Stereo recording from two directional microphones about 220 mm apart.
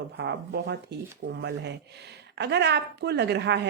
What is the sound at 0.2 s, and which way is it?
A woman's voice, 50° right (ahead or behind).